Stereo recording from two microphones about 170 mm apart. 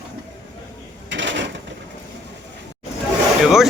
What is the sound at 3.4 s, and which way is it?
Speech, centre (ahead or behind).